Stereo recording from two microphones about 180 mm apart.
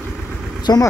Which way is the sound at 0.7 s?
20° left (ahead or behind).